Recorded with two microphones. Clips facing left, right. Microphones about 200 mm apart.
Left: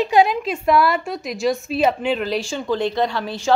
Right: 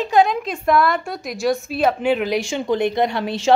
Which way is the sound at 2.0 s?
10° right (ahead or behind).